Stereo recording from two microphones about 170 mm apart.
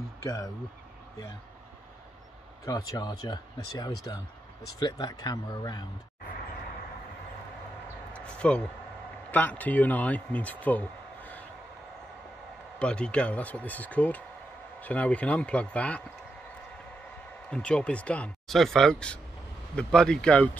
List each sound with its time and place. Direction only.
0.2 s speech: 20° left (ahead or behind)
2.6 s speech: 20° left (ahead or behind)
8.1 s a sound: 5° left (ahead or behind)
9.3 s speech: 10° left (ahead or behind)
12.7 s speech: 5° left (ahead or behind)
17.5 s speech: 5° left (ahead or behind)